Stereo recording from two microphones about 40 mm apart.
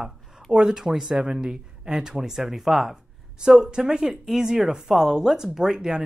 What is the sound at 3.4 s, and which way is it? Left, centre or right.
A woman's voice, centre.